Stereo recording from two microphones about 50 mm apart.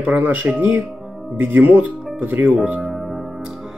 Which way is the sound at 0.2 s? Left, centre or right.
Right.